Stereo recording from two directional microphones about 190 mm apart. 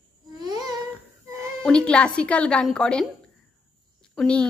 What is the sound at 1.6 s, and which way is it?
Speech, 5° left (ahead or behind).